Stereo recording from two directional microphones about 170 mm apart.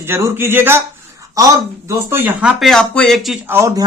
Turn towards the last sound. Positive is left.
turn(degrees=-15)  # may be behind; listen again after turning